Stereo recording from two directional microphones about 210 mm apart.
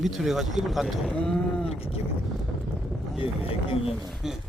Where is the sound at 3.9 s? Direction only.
Centre (ahead or behind).